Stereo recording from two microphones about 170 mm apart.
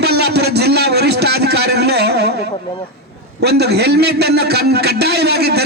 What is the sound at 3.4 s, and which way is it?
A man's voice, 75° right (ahead or behind).